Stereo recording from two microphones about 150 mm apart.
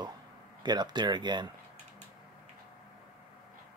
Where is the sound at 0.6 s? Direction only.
30° right (ahead or behind).